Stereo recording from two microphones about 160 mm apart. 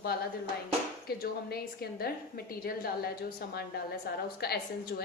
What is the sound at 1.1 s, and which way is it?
A woman's voice, 75° left (ahead or behind).